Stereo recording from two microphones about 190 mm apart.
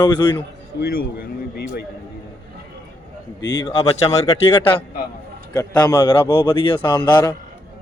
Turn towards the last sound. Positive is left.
turn(degrees=25)  # may be behind; listen again after turning